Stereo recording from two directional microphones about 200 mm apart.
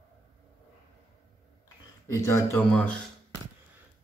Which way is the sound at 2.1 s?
15° left (ahead or behind).